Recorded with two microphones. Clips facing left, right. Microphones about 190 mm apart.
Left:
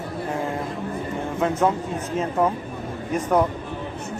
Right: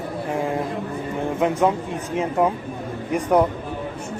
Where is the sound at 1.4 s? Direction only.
15° right (ahead or behind).